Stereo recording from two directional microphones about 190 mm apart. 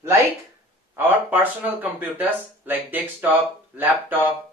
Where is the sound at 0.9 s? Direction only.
10° right (ahead or behind).